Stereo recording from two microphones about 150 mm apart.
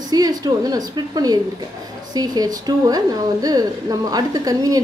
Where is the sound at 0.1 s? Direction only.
25° right (ahead or behind).